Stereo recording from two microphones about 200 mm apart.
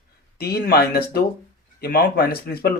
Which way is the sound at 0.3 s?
50° left (ahead or behind).